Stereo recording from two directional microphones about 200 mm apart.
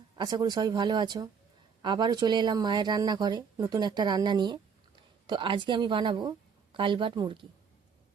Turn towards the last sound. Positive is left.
turn(degrees=-25)  # may be behind; listen again after turning